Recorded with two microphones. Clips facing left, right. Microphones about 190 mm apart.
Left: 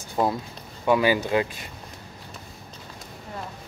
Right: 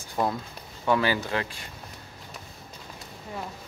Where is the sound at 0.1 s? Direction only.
15° left (ahead or behind).